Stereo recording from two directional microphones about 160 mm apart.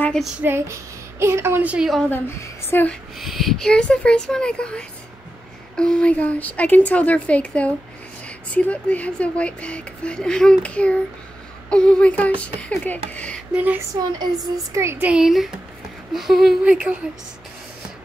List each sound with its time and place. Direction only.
0.0 s a sound: 5° left (ahead or behind)
0.4 s speech: 15° right (ahead or behind)
2.0 s speech: 15° left (ahead or behind)
3.2 s speech: centre (ahead or behind)
14.4 s speech: 20° right (ahead or behind)